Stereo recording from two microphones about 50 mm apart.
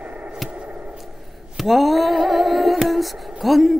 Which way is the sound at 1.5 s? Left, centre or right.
Centre.